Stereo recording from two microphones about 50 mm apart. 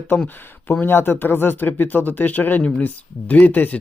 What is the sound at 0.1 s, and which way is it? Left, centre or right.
Speech, left.